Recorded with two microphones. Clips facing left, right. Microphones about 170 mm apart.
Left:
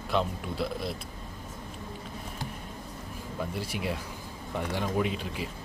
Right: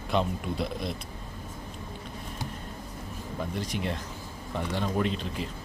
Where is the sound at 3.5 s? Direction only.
10° left (ahead or behind).